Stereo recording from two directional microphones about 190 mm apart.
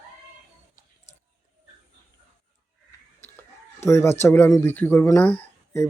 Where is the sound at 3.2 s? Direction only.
10° left (ahead or behind).